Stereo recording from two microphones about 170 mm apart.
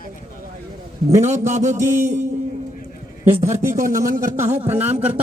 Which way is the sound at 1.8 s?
15° right (ahead or behind).